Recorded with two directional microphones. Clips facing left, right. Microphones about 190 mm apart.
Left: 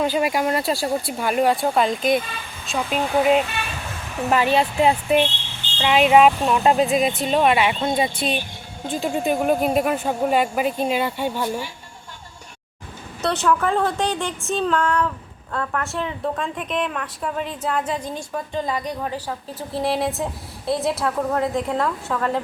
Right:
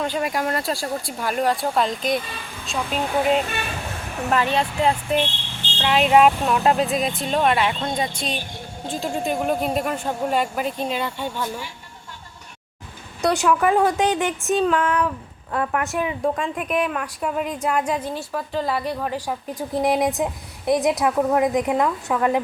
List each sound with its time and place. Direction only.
0.0 s speech: 5° left (ahead or behind)
13.2 s a woman's voice: 15° right (ahead or behind)